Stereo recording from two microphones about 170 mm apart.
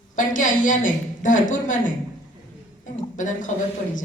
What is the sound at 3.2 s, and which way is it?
Speech, 50° left (ahead or behind).